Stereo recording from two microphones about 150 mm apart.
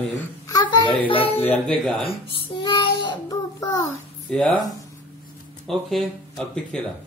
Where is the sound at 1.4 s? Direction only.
10° left (ahead or behind).